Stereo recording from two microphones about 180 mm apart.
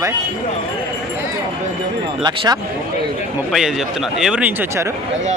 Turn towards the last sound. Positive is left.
turn(degrees=-10)  # may be behind; listen again after turning